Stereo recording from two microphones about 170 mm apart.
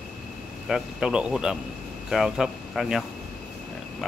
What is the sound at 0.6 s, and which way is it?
Speech, 5° right (ahead or behind).